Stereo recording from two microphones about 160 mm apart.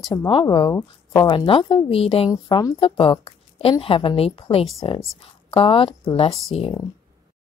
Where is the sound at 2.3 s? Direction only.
25° left (ahead or behind).